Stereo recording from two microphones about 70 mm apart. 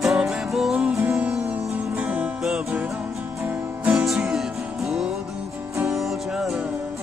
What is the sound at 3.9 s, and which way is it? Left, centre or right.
Music, centre.